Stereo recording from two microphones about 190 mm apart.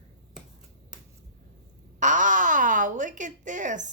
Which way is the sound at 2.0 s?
40° right (ahead or behind).